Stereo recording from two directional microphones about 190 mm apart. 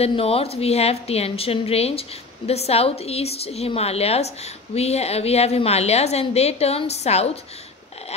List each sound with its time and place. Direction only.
0.0 s a woman's voice: 30° left (ahead or behind)